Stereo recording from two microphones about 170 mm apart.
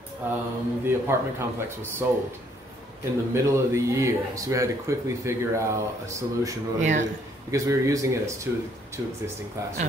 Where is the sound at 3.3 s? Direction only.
15° right (ahead or behind).